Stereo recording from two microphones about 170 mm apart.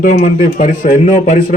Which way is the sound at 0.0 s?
45° left (ahead or behind).